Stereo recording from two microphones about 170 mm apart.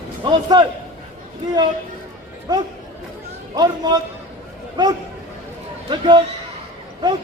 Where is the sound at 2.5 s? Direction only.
25° right (ahead or behind).